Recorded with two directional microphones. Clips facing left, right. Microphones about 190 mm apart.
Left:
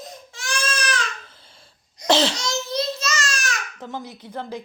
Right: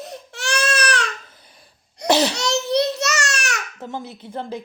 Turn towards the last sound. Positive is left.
turn(degrees=-25)  # may be behind; listen again after turning